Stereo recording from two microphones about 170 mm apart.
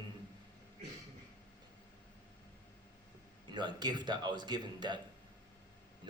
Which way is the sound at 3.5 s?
25° right (ahead or behind).